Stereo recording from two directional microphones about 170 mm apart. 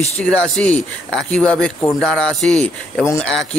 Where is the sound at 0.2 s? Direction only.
5° left (ahead or behind).